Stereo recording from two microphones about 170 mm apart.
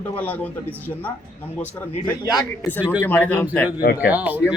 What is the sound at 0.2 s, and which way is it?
Speech, 10° left (ahead or behind).